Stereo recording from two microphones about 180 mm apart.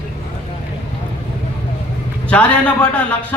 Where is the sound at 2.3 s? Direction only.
5° left (ahead or behind).